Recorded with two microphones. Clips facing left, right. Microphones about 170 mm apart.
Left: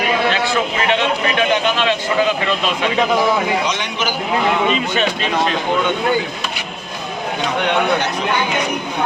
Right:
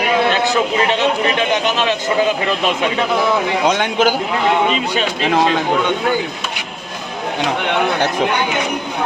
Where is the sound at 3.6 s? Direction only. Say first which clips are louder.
Right 7 dB; 55° right (ahead or behind).